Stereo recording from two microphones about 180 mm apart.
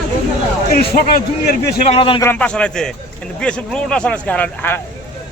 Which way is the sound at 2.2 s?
10° left (ahead or behind).